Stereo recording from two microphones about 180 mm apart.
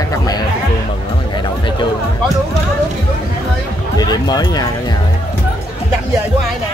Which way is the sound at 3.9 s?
20° left (ahead or behind).